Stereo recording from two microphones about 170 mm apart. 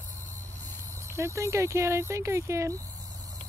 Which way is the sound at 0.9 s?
15° right (ahead or behind).